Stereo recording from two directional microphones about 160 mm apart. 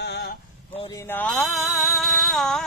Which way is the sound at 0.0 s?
85° left.